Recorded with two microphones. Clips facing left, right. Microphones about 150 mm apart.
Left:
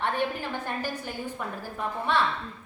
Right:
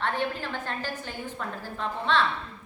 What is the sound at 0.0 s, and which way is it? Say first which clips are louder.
A woman's voice: left 1 dB; 15° left (ahead or behind).